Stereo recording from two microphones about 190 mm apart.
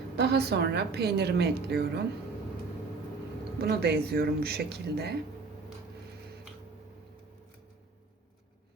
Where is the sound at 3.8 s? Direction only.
55° right (ahead or behind).